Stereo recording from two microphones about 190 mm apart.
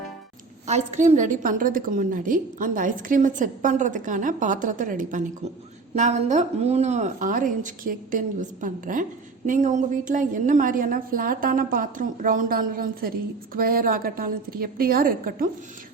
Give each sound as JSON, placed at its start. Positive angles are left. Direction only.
{"t": 0.7, "sound": "a woman's voice", "side_deg": -35}